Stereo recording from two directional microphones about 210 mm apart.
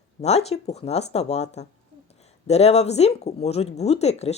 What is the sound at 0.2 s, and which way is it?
Speech, 30° left (ahead or behind).